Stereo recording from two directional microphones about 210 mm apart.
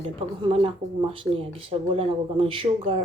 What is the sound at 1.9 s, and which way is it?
Speech, 25° right (ahead or behind).